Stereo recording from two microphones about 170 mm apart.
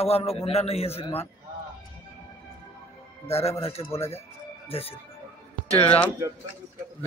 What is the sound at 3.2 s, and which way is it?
Speech, 35° left (ahead or behind).